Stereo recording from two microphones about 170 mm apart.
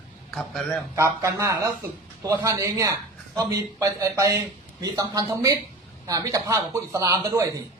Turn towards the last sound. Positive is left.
turn(degrees=-20)  # may be behind; listen again after turning